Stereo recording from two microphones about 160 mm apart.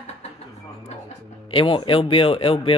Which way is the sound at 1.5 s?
35° left (ahead or behind).